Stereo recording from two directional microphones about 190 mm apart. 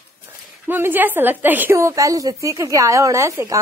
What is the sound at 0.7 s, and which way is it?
Speech, 10° right (ahead or behind).